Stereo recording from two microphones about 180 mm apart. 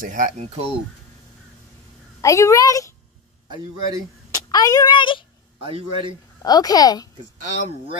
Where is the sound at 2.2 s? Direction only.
15° left (ahead or behind).